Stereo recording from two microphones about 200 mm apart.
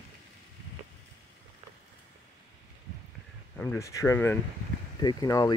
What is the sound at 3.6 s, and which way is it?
Speech, 10° left (ahead or behind).